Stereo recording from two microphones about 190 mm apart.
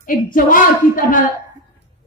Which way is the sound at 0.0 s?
45° left (ahead or behind).